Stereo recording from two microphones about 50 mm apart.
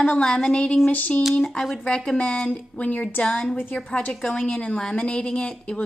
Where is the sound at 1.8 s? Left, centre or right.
Centre.